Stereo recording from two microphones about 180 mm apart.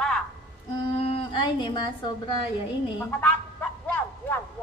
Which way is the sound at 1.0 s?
30° left (ahead or behind).